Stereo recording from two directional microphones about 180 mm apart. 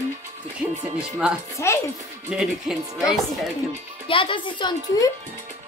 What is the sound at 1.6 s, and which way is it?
Child singing, 15° left (ahead or behind).